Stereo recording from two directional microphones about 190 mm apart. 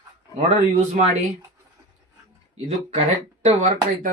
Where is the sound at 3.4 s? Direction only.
40° right (ahead or behind).